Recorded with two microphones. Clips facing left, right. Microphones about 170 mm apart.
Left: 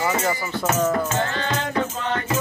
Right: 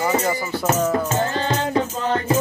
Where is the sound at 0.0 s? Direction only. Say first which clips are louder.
Right 2 dB; 10° right (ahead or behind).